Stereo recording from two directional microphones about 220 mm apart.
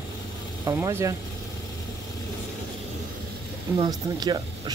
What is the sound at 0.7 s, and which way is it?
Speech, 10° right (ahead or behind).